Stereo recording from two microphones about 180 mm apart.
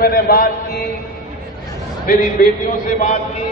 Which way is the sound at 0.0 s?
55° left (ahead or behind).